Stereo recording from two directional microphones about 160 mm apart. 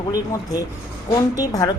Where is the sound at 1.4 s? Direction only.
20° left (ahead or behind).